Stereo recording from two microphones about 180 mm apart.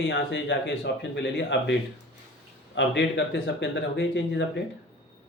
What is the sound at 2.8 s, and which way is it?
Speech, 85° left.